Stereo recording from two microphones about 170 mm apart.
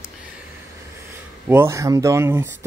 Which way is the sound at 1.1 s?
15° right (ahead or behind).